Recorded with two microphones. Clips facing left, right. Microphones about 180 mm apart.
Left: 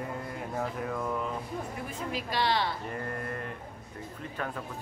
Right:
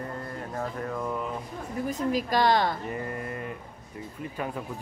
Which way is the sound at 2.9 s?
5° right (ahead or behind).